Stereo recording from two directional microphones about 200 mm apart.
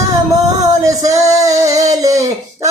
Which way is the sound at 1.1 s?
15° right (ahead or behind).